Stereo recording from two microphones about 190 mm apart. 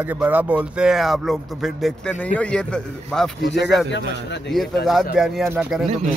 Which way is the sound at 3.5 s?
65° left (ahead or behind).